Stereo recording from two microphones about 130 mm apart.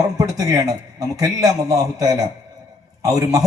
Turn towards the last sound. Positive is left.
turn(degrees=-30)  # may be behind; listen again after turning